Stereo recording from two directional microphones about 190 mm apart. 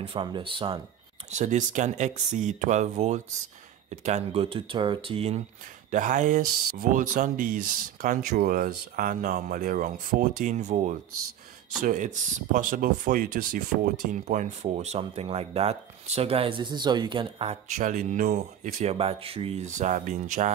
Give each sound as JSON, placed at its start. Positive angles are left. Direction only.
{"t": 0.0, "sound": "speech", "side_deg": -25}
{"t": 1.3, "sound": "speech", "side_deg": -40}
{"t": 5.9, "sound": "speech", "side_deg": -40}